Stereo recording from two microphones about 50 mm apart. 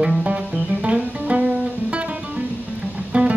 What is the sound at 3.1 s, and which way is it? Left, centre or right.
Music, right.